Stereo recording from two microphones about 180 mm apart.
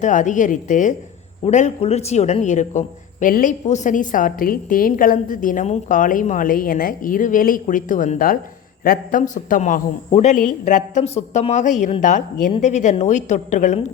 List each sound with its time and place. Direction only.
0.0 s a man's voice: 45° left (ahead or behind)